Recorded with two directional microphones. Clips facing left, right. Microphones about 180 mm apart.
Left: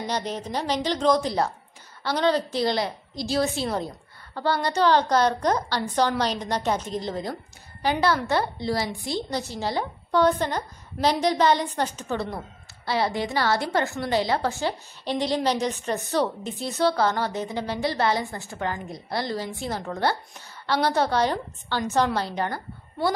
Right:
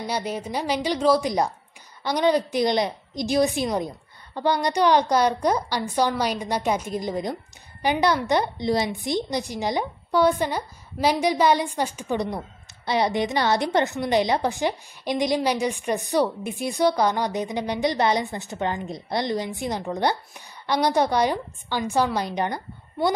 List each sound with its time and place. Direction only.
0.0 s a woman's voice: 10° right (ahead or behind)